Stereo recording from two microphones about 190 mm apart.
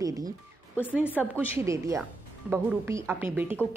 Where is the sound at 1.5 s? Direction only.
15° right (ahead or behind).